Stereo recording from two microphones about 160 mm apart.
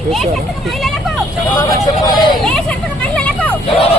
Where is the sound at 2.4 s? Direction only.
5° left (ahead or behind).